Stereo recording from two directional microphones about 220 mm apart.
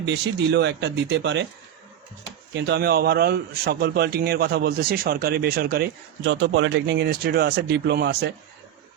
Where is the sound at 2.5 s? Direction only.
50° right (ahead or behind).